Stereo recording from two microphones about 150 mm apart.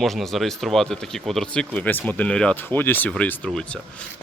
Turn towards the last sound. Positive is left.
turn(degrees=5)  # may be behind; listen again after turning